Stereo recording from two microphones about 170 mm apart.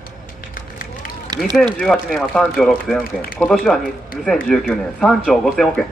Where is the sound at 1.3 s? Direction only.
20° right (ahead or behind).